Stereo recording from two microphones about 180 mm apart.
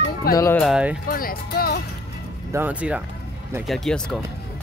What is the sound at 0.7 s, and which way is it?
Speech, 5° right (ahead or behind).